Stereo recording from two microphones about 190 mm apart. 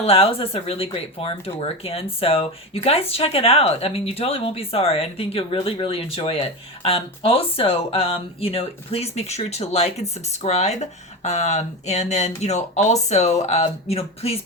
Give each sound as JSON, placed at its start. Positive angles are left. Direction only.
{"t": 0.0, "sound": "speech", "side_deg": 30}